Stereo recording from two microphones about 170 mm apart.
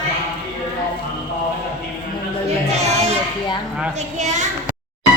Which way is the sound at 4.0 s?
45° right (ahead or behind).